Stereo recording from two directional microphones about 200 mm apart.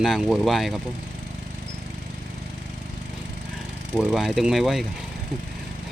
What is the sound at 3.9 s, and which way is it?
Speech, centre (ahead or behind).